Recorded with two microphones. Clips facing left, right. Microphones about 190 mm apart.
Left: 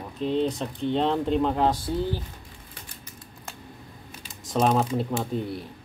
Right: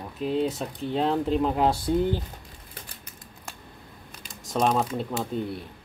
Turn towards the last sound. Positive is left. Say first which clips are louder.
# left 1 dB
turn(degrees=0)  # may be behind; listen again after turning